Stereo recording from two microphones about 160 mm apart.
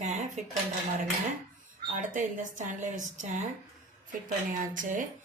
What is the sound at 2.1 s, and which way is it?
A woman's voice, 55° right (ahead or behind).